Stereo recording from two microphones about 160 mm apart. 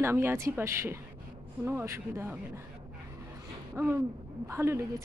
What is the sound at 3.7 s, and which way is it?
Speech, 15° right (ahead or behind).